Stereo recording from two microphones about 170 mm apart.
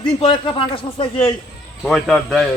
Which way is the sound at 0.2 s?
30° left (ahead or behind).